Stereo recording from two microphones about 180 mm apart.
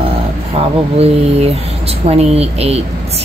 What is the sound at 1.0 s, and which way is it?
Speech, 35° right (ahead or behind).